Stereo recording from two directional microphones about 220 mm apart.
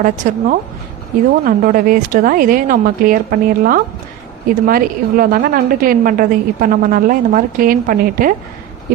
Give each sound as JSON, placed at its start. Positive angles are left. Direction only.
{"t": 0.0, "sound": "a woman's voice", "side_deg": -40}